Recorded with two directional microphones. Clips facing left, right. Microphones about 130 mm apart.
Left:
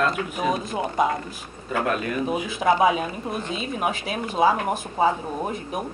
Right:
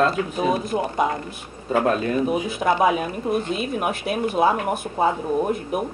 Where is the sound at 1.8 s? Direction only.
30° right (ahead or behind).